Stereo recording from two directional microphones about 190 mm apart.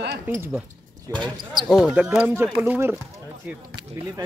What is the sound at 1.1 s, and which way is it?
Speech, 20° right (ahead or behind).